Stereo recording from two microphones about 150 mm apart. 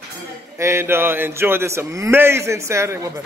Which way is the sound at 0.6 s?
15° right (ahead or behind).